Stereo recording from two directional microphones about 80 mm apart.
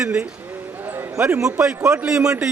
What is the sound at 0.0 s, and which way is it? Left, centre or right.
A man's voice, centre.